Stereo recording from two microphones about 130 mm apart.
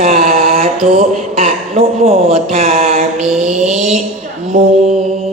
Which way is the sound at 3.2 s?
5° right (ahead or behind).